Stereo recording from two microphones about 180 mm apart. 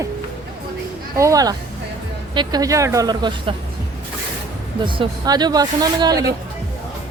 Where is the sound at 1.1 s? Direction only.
20° right (ahead or behind).